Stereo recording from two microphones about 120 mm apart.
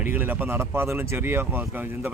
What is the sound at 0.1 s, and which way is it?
A man's voice, 15° right (ahead or behind).